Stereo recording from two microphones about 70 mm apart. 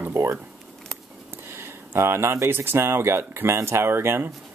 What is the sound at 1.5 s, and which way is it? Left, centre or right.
Speech, right.